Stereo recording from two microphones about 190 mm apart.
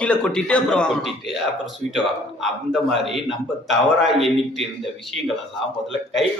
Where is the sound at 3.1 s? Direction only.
Centre (ahead or behind).